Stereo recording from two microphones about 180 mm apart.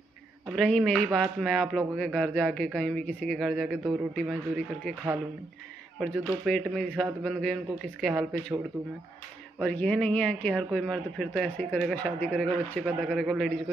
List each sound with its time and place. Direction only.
0.6 s speech: 5° left (ahead or behind)
5.9 s speech: 5° left (ahead or behind)
9.6 s speech: 5° left (ahead or behind)